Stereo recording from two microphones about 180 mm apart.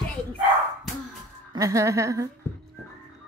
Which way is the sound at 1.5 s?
20° right (ahead or behind).